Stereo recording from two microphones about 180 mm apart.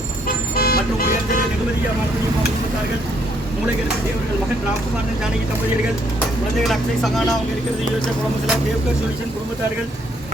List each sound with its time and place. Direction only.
0.5 s toot: 55° left (ahead or behind)
6.1 s speech: centre (ahead or behind)